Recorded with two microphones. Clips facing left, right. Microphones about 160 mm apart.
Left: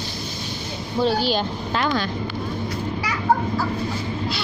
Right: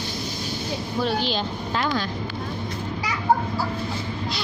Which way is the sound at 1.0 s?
30° left (ahead or behind).